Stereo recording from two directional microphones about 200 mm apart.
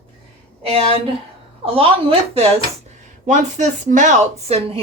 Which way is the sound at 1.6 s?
30° right (ahead or behind).